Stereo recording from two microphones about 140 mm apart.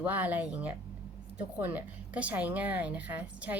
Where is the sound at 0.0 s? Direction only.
10° right (ahead or behind).